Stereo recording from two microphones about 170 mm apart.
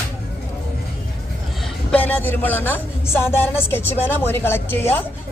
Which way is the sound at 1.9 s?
10° left (ahead or behind).